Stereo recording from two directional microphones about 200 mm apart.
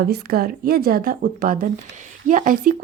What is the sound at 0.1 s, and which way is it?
Speech, 50° right (ahead or behind).